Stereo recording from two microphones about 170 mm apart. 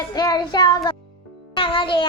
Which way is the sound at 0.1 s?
25° left (ahead or behind).